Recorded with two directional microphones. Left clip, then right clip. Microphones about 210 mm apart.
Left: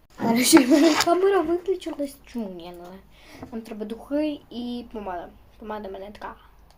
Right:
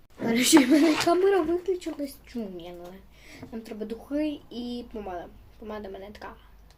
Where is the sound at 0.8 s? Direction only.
50° left (ahead or behind).